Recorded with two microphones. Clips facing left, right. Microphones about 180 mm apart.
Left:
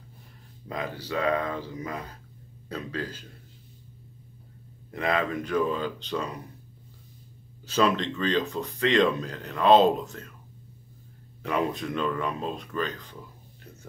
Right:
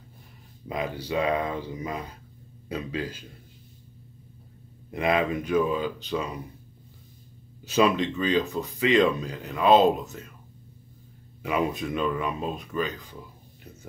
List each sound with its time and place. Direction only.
0.7 s speech: 15° right (ahead or behind)
4.9 s speech: 15° right (ahead or behind)
7.6 s speech: 10° right (ahead or behind)
11.4 s speech: 5° right (ahead or behind)